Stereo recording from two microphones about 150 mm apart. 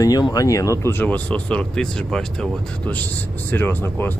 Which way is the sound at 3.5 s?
15° left (ahead or behind).